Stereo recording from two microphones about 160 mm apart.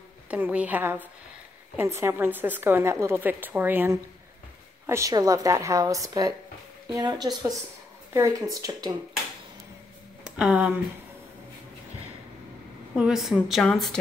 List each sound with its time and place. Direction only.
0.3 s a woman's voice: 10° right (ahead or behind)
10.3 s a woman's voice: 5° right (ahead or behind)
12.9 s a woman's voice: 5° right (ahead or behind)